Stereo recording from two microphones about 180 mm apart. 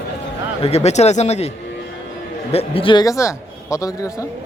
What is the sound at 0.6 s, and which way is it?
A man's voice, 35° left (ahead or behind).